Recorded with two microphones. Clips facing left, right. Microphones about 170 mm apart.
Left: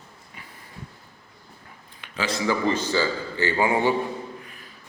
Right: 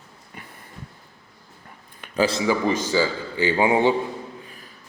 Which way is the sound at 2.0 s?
40° right (ahead or behind).